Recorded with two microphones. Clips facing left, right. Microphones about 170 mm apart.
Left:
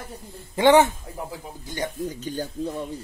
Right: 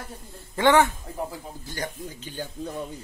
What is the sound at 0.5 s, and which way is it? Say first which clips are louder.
Speech: left 3 dB; 20° left (ahead or behind).